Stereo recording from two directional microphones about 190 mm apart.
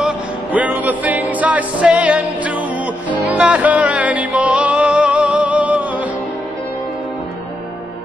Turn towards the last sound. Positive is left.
turn(degrees=-10)  # may be behind; listen again after turning